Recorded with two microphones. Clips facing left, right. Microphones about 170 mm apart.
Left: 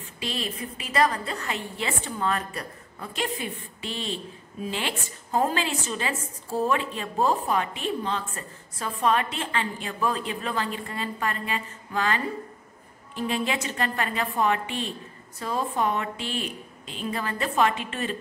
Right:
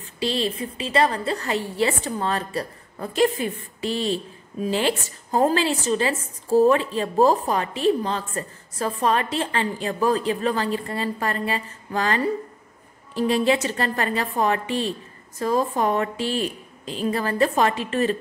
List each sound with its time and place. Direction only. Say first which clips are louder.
0.0 s a woman's voice: right 8 dB; 30° right (ahead or behind)